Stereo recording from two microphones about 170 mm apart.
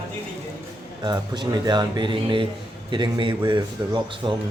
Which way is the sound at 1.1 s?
25° right (ahead or behind).